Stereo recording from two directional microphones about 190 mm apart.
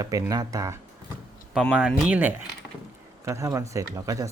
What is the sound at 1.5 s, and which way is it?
Speech, 5° right (ahead or behind).